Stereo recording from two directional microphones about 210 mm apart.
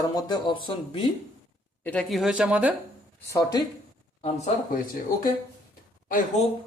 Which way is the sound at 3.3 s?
15° left (ahead or behind).